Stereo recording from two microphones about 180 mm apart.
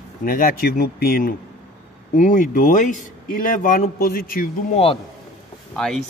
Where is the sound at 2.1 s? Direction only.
45° left (ahead or behind).